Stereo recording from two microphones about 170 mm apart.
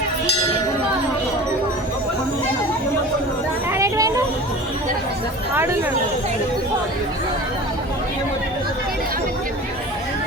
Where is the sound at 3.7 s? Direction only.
20° right (ahead or behind).